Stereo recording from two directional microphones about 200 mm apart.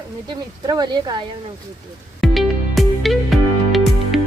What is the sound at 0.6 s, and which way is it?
Speech, 20° right (ahead or behind).